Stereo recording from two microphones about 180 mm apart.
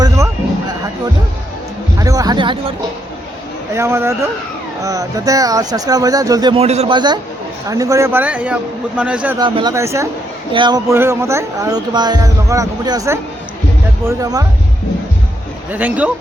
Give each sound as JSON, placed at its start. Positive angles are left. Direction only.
{"t": 2.0, "sound": "music", "side_deg": -20}
{"t": 3.7, "sound": "a man's voice", "side_deg": -15}
{"t": 6.6, "sound": "a man's voice", "side_deg": -35}
{"t": 9.4, "sound": "a man's voice", "side_deg": -25}
{"t": 15.7, "sound": "a man's voice", "side_deg": -10}